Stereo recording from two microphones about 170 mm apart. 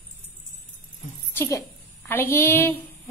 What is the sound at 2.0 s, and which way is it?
Speech, 15° left (ahead or behind).